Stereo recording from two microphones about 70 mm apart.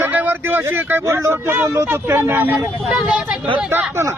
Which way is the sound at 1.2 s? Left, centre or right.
Right.